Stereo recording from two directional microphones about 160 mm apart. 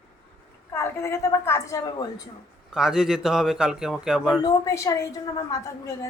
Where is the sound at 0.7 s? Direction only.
15° left (ahead or behind).